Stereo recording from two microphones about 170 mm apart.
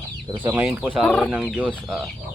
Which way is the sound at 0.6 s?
5° right (ahead or behind).